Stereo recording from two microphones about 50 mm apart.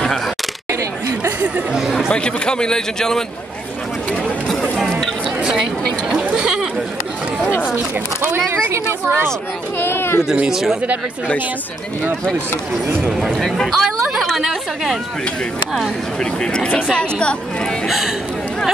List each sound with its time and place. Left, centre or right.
1.8 s chatter: centre
2.1 s a man's voice: centre
6.0 s sheep: centre
8.5 s speech: right
9.8 s speech: left
10.5 s speech: centre
13.3 s speech: centre
14.4 s a woman's voice: centre
16.2 s a man's voice: centre
17.8 s speech: centre